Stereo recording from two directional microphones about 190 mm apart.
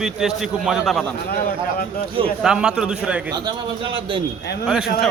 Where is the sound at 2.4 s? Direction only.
5° right (ahead or behind).